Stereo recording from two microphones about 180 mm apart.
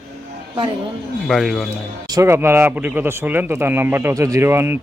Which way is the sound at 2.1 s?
15° right (ahead or behind).